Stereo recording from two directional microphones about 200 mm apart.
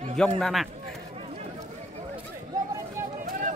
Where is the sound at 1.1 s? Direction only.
30° right (ahead or behind).